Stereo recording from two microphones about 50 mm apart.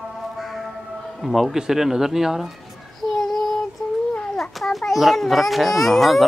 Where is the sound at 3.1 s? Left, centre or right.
Centre.